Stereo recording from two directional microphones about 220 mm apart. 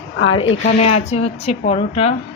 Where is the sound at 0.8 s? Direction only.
30° left (ahead or behind).